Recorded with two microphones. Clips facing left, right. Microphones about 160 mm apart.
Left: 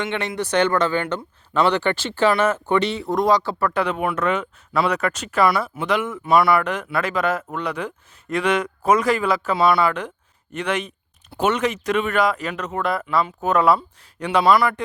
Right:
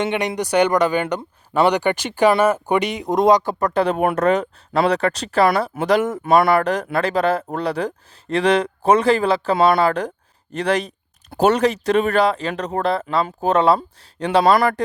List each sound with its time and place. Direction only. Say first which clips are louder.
0.0 s speech: right 4 dB; 15° right (ahead or behind)
3.4 s speech: right 3 dB; 40° right (ahead or behind)
6.5 s speech: right 3 dB; 35° right (ahead or behind)
14.5 s speech: right 1 dB; 50° right (ahead or behind)